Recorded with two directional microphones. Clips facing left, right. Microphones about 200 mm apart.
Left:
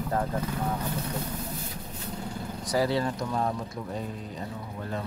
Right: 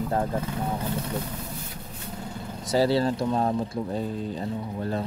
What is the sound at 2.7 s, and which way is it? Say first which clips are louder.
Speech: right 4 dB; 30° right (ahead or behind).